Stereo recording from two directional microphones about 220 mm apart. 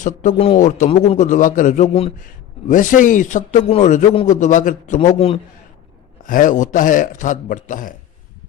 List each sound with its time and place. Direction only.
0.0 s a man's voice: 35° left (ahead or behind)
6.2 s a man's voice: 35° left (ahead or behind)